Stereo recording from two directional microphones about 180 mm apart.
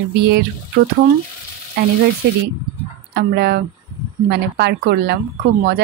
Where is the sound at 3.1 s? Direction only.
60° right (ahead or behind).